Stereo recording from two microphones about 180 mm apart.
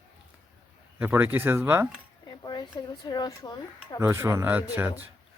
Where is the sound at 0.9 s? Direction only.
10° right (ahead or behind).